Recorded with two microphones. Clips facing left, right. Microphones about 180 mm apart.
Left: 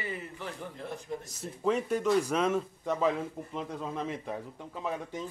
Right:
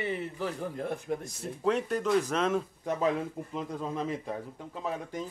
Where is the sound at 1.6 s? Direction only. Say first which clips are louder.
Even; 5° left (ahead or behind).